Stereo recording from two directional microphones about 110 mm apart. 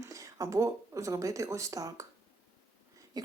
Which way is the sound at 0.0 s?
30° right (ahead or behind).